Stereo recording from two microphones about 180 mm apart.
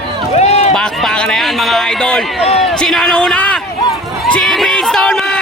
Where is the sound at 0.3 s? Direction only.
35° left (ahead or behind).